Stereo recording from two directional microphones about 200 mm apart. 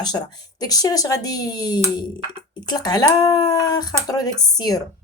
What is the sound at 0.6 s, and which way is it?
A woman's voice, 20° left (ahead or behind).